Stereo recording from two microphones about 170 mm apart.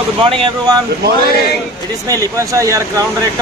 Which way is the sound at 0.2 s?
30° right (ahead or behind).